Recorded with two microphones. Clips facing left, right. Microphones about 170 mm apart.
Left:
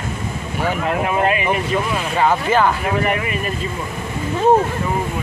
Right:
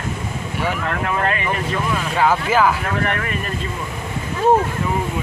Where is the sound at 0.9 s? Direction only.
15° left (ahead or behind).